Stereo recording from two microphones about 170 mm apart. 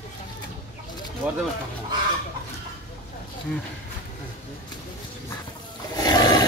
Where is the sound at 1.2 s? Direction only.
10° right (ahead or behind).